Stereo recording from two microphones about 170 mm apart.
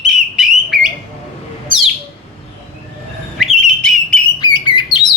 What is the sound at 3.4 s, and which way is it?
Whistle, centre (ahead or behind).